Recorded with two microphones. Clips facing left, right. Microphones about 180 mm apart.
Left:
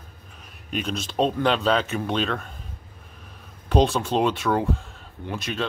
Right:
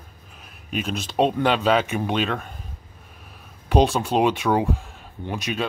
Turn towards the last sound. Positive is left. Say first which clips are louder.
# right 2 dB
turn(degrees=-15)  # may be behind; listen again after turning